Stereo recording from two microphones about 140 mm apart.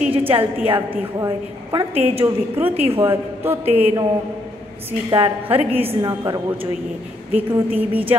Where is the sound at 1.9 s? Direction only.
45° right (ahead or behind).